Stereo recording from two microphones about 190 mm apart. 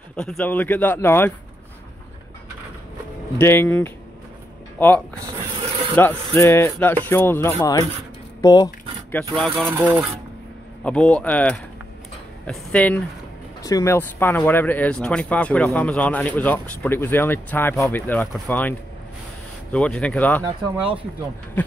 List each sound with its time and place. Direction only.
0.1 s speech: 5° left (ahead or behind)
3.3 s speech: 10° left (ahead or behind)
9.3 s speech: centre (ahead or behind)
13.6 s speech: 20° left (ahead or behind)
20.7 s speech: 5° right (ahead or behind)